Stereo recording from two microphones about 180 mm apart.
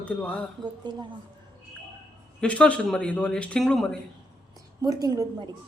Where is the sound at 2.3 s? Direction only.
5° left (ahead or behind).